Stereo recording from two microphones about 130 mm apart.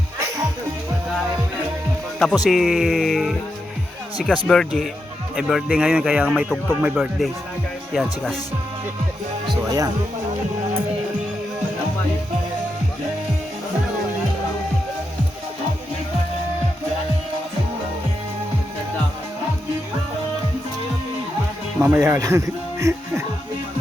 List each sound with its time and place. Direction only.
2.4 s speech: centre (ahead or behind)
4.4 s speech: 5° left (ahead or behind)
9.6 s speech: 30° right (ahead or behind)
21.8 s speech: 20° right (ahead or behind)